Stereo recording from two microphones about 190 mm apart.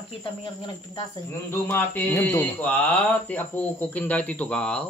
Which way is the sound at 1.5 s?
10° left (ahead or behind).